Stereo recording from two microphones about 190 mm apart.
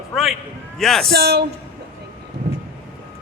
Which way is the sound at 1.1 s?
55° right (ahead or behind).